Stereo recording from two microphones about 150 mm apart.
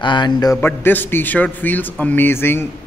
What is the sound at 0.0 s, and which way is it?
A man's voice, 30° left (ahead or behind).